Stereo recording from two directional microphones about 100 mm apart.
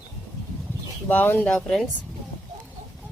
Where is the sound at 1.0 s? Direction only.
15° left (ahead or behind).